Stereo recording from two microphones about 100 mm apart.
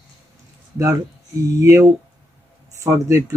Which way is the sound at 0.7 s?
35° right (ahead or behind).